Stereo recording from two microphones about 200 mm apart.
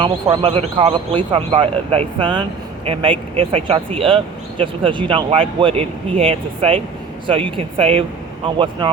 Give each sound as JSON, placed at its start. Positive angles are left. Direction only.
{"t": 0.0, "sound": "speech", "side_deg": -25}